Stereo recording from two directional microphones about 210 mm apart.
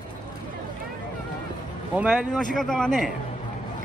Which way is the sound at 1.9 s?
5° right (ahead or behind).